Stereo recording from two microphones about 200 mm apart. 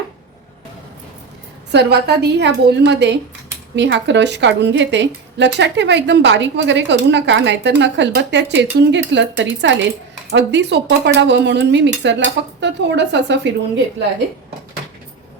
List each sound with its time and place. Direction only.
1.7 s a woman's voice: 55° right (ahead or behind)